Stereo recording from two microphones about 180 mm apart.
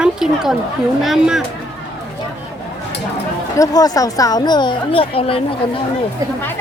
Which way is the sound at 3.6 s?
20° left (ahead or behind).